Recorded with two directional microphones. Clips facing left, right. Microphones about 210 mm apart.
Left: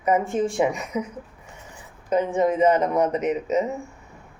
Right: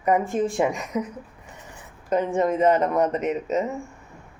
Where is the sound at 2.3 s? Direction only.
Centre (ahead or behind).